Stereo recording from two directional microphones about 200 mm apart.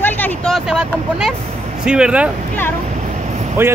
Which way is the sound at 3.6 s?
10° right (ahead or behind).